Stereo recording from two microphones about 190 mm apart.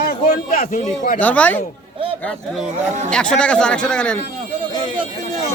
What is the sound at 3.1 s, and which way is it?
Speech, 5° left (ahead or behind).